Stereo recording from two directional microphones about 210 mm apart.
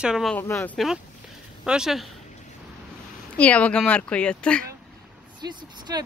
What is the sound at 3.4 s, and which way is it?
A woman's voice, 5° left (ahead or behind).